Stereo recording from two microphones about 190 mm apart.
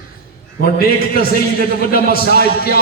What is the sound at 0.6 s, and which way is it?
A man's voice, 50° left (ahead or behind).